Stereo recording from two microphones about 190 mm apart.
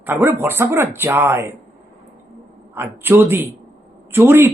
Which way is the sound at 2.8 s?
10° right (ahead or behind).